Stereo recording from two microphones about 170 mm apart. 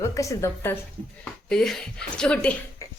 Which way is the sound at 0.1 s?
20° left (ahead or behind).